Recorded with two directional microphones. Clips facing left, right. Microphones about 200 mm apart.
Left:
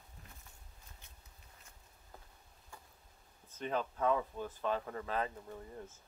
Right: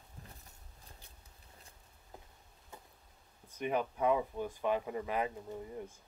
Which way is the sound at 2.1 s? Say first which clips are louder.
Right 3 dB; 20° right (ahead or behind).